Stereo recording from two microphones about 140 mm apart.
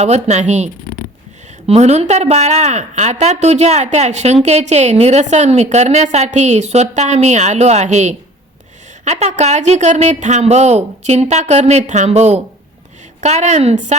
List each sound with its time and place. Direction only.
0.0 s a woman's voice: 55° right (ahead or behind)